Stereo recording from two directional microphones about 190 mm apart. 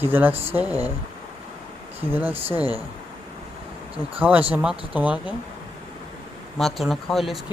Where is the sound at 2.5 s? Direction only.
20° left (ahead or behind).